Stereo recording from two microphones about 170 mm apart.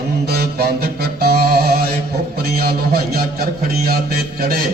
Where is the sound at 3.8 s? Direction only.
60° right (ahead or behind).